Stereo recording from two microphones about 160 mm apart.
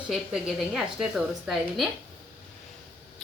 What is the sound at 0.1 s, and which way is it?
A woman's voice, centre (ahead or behind).